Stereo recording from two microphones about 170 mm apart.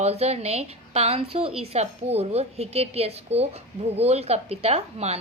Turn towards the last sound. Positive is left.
turn(degrees=-40)  # may be behind; listen again after turning